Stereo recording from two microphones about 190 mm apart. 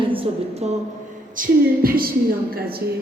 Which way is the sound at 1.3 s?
50° right (ahead or behind).